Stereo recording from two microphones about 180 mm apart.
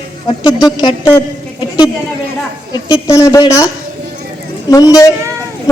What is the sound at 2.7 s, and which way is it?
Speech, 15° left (ahead or behind).